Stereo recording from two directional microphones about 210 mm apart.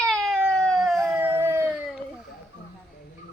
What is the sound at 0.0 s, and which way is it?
Baby cry, centre (ahead or behind).